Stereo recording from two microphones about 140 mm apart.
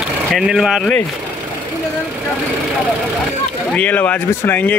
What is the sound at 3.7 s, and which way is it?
Speech, 10° left (ahead or behind).